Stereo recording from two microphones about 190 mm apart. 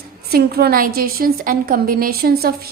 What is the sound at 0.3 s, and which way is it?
A woman's voice, 55° right (ahead or behind).